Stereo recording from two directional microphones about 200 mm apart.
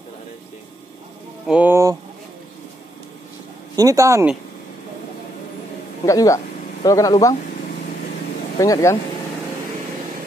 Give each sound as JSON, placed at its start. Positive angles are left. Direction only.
{"t": 1.5, "sound": "speech", "side_deg": -10}
{"t": 3.7, "sound": "speech", "side_deg": -15}
{"t": 6.0, "sound": "speech", "side_deg": 15}
{"t": 8.5, "sound": "speech", "side_deg": 15}